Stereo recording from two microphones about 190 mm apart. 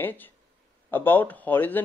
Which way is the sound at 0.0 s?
10° left (ahead or behind).